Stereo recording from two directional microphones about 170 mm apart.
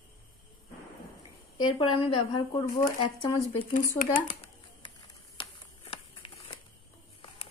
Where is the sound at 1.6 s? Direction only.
35° left (ahead or behind).